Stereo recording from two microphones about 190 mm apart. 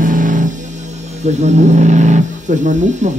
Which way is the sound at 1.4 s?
40° right (ahead or behind).